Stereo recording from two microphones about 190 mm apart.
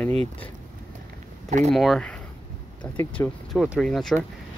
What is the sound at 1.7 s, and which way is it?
Speech, centre (ahead or behind).